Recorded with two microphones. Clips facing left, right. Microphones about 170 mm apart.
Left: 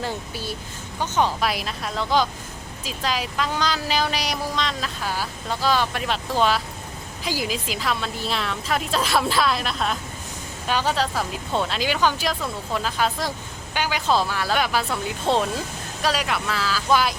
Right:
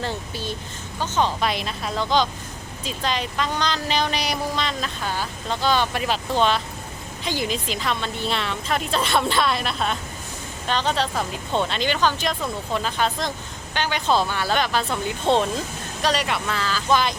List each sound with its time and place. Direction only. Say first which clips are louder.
0.0 s speech: right 1 dB; 10° left (ahead or behind)